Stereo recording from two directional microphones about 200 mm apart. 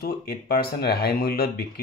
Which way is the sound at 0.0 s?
50° left (ahead or behind).